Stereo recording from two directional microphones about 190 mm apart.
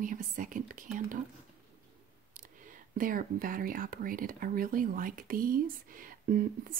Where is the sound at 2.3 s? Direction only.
45° right (ahead or behind).